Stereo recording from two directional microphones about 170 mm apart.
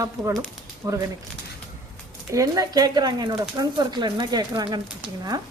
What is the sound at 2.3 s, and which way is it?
Speech, 20° right (ahead or behind).